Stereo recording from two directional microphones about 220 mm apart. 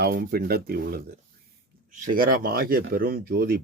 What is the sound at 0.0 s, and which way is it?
Speech, 45° right (ahead or behind).